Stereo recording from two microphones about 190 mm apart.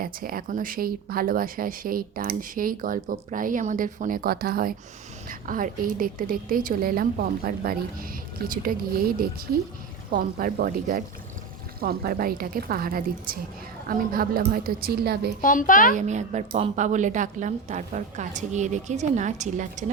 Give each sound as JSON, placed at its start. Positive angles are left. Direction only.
{"t": 0.0, "sound": "speech", "side_deg": -50}
{"t": 15.4, "sound": "a child's voice", "side_deg": 45}
{"t": 16.0, "sound": "a woman's voice", "side_deg": -40}